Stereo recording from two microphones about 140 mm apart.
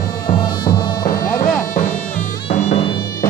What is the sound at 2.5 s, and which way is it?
Music, 55° left (ahead or behind).